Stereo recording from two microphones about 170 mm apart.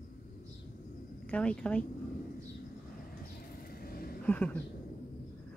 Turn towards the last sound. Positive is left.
turn(degrees=10)  # may be behind; listen again after turning